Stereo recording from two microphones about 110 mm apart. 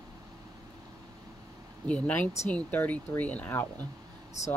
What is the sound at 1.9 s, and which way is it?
Speech, 15° left (ahead or behind).